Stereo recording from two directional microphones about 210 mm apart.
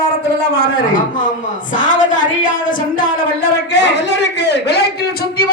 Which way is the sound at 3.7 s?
55° left (ahead or behind).